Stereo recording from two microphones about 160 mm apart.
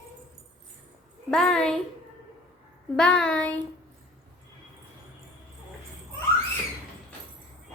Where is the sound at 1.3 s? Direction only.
5° left (ahead or behind).